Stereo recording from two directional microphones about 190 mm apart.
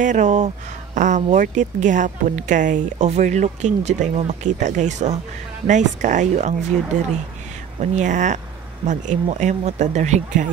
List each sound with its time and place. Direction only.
0.0 s speech: 40° right (ahead or behind)
7.8 s speech: 40° right (ahead or behind)